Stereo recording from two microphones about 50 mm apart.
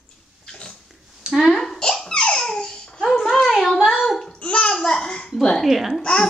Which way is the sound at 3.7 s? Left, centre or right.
Centre.